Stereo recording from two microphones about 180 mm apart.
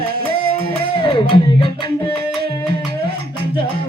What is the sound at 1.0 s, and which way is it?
Music, 30° left (ahead or behind).